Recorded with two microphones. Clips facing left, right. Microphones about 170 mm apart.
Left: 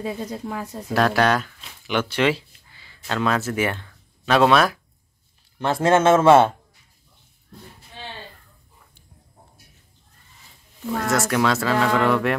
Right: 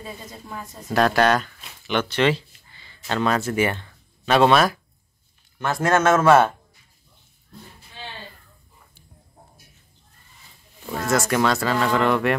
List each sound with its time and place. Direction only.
0.0 s speech: 75° left (ahead or behind)
0.8 s speech: centre (ahead or behind)
5.6 s speech: 30° left (ahead or behind)
11.1 s speech: centre (ahead or behind)